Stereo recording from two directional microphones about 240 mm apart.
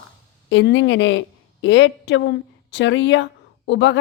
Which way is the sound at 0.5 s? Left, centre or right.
Left.